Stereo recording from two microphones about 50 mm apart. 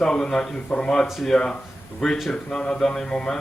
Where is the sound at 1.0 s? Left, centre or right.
Centre.